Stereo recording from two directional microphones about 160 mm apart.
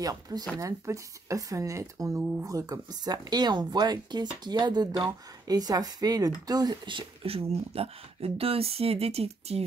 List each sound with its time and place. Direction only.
0.0 s speech: 25° right (ahead or behind); by 9.6 s 40° right (ahead or behind)